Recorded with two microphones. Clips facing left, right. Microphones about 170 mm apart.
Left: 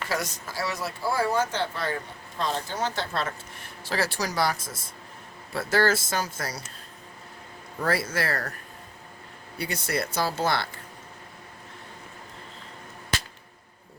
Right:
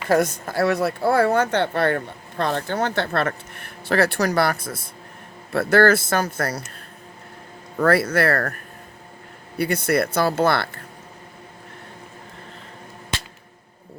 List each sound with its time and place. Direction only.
0.1 s speech: 55° right (ahead or behind)
7.8 s speech: 65° right (ahead or behind)
9.6 s speech: 55° right (ahead or behind)